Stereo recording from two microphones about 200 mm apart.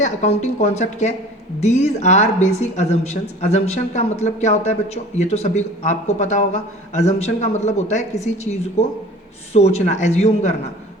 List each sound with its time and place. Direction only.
0.0 s a woman's voice: 35° left (ahead or behind)
9.5 s a woman's voice: 30° left (ahead or behind)